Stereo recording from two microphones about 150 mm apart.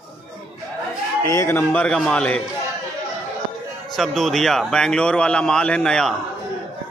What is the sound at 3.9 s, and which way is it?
Speech, centre (ahead or behind).